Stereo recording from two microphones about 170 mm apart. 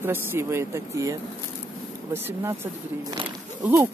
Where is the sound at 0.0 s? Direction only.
15° right (ahead or behind).